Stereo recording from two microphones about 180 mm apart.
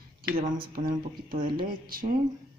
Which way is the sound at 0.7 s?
55° right (ahead or behind).